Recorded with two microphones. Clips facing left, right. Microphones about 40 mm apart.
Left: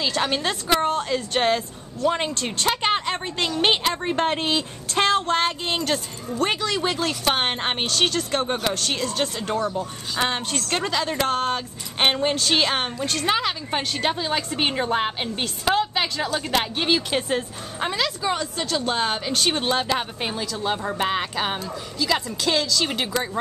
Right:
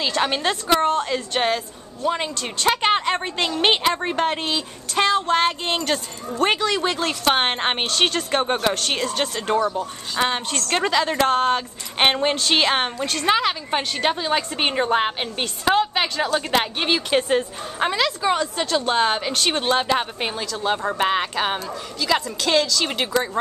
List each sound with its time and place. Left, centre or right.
0.0 s a woman's voice: centre
2.0 s speech: centre
2.6 s a woman's voice: centre
4.2 s a woman's voice: centre
5.2 s a woman's voice: centre
9.6 s speech: right
10.1 s a woman's voice: centre